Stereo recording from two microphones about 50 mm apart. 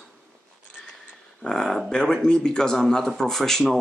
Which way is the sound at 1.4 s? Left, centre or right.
Centre.